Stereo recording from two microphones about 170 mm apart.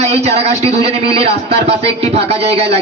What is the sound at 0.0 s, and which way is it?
A man's voice, 40° right (ahead or behind).